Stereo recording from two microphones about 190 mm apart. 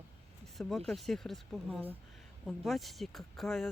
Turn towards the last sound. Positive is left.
turn(degrees=0)  # may be behind; listen again after turning